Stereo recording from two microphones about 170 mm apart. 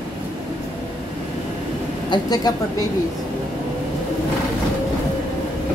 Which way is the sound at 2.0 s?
25° left (ahead or behind).